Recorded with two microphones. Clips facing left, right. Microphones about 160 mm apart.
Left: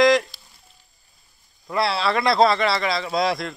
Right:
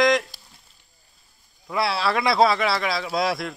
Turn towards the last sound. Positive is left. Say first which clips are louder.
# left 2 dB
turn(degrees=0)  # may be behind; listen again after turning